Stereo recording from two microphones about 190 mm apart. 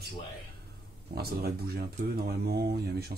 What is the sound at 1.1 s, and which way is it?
Speech, 55° right (ahead or behind).